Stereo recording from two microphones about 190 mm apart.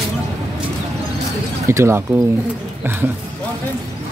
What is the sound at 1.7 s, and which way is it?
Speech, 15° right (ahead or behind).